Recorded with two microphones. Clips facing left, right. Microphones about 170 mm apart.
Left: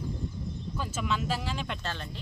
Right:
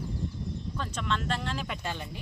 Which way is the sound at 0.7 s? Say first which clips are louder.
Left 1 dB; 5° left (ahead or behind).